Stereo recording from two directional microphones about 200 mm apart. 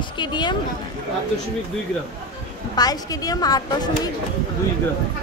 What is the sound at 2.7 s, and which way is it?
Speech, 20° left (ahead or behind).